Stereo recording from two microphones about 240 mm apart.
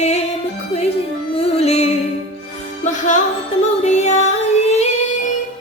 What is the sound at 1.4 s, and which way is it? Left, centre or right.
Music, left.